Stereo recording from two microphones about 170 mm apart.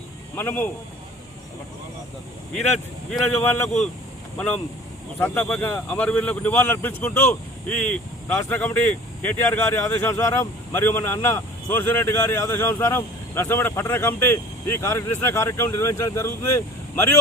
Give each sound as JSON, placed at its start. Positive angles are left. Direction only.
{"t": 0.3, "sound": "speech", "side_deg": 10}
{"t": 2.7, "sound": "speech", "side_deg": 5}